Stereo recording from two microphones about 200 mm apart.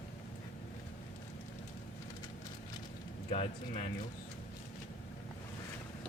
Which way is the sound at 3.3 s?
30° left (ahead or behind).